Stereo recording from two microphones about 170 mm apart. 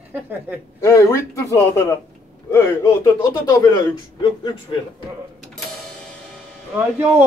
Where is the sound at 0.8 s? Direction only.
15° left (ahead or behind).